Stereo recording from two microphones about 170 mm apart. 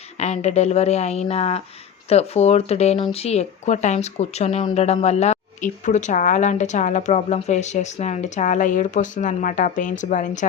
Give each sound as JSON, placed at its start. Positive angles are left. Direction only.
{"t": 0.2, "sound": "a woman's voice", "side_deg": 40}